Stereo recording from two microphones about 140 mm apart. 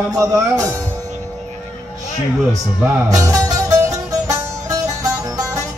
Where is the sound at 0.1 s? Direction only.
25° right (ahead or behind).